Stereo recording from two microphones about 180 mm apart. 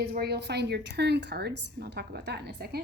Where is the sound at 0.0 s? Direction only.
60° right (ahead or behind).